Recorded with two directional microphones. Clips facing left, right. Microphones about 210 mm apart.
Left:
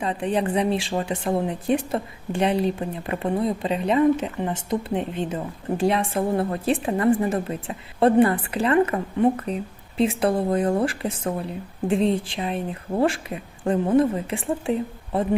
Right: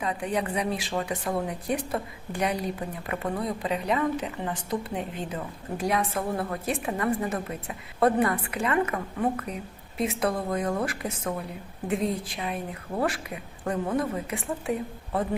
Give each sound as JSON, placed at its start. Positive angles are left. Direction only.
{"t": 0.0, "sound": "speech", "side_deg": 30}